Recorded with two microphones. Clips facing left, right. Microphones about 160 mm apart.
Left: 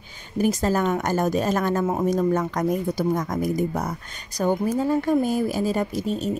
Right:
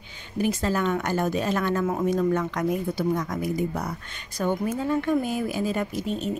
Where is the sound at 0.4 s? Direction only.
40° left (ahead or behind).